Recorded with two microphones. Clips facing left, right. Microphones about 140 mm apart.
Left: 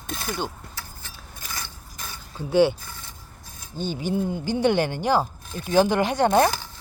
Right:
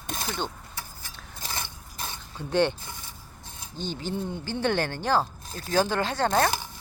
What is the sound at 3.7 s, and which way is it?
Speech, 10° left (ahead or behind).